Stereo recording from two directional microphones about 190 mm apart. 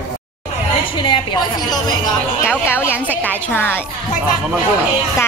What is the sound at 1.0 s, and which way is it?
A woman's voice, 25° left (ahead or behind).